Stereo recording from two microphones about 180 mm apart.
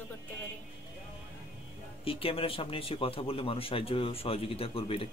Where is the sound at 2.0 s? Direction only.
30° left (ahead or behind).